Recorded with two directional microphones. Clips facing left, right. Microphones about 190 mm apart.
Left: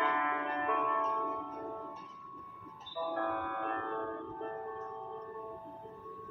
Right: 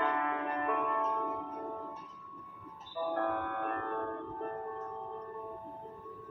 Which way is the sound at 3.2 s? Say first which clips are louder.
Right 2 dB; 40° right (ahead or behind).